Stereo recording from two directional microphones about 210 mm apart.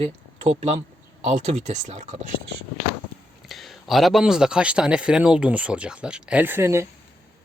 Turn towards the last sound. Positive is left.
turn(degrees=-10)  # may be behind; listen again after turning